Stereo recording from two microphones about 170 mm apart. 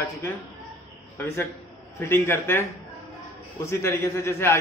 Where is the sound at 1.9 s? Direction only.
15° left (ahead or behind).